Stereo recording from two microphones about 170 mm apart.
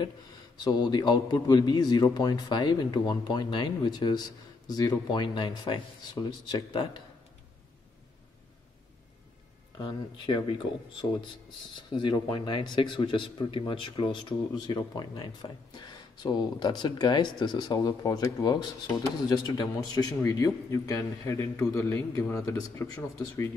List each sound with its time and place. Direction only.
0.7 s speech: 25° left (ahead or behind)
9.8 s speech: 30° left (ahead or behind)